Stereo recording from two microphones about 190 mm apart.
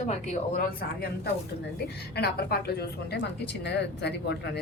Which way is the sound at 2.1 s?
55° left (ahead or behind).